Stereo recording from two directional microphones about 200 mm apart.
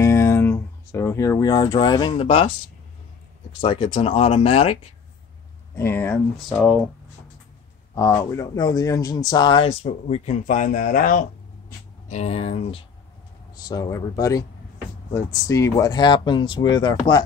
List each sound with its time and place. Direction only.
0.0 s speech: 15° left (ahead or behind)
3.6 s speech: 25° left (ahead or behind)
5.8 s speech: 10° left (ahead or behind)
7.9 s speech: 15° left (ahead or behind); by 11.2 s 45° left (ahead or behind)
12.1 s speech: 30° left (ahead or behind)
13.6 s speech: 20° left (ahead or behind)